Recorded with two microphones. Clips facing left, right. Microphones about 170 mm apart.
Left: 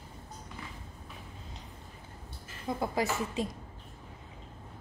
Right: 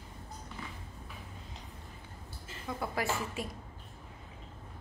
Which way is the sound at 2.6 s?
20° left (ahead or behind).